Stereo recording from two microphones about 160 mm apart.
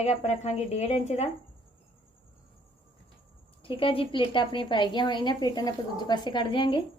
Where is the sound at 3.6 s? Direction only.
35° left (ahead or behind).